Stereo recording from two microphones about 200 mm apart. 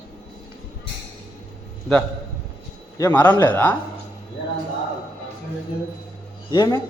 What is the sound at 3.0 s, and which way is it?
Speech, 10° left (ahead or behind).